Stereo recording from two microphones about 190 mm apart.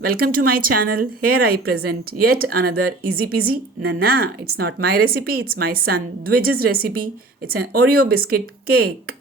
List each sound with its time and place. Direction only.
0.0 s speech: 50° right (ahead or behind)